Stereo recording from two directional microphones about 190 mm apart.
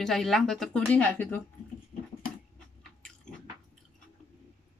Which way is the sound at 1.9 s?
40° left (ahead or behind).